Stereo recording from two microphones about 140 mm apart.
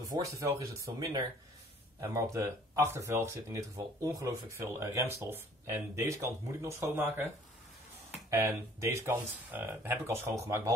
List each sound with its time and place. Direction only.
0.0 s speech: 25° right (ahead or behind)
8.3 s speech: 20° right (ahead or behind)